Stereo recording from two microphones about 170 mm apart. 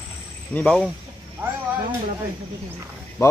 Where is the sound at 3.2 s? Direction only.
20° left (ahead or behind).